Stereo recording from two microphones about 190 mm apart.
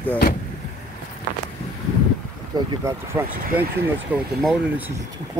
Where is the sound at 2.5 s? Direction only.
20° right (ahead or behind).